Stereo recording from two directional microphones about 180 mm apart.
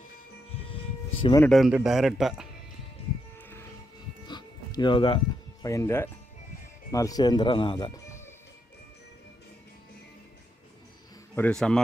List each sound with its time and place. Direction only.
0.5 s a sound: 30° left (ahead or behind)
1.4 s a man's voice: centre (ahead or behind)
3.3 s music: 10° left (ahead or behind)
4.3 s a sound: 25° left (ahead or behind)
5.7 s speech: 15° left (ahead or behind)
11.3 s a man's voice: 5° left (ahead or behind)